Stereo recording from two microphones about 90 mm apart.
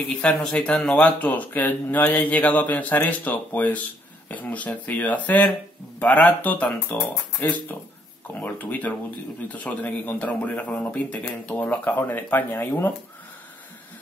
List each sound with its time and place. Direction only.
0.3 s speech: 10° left (ahead or behind)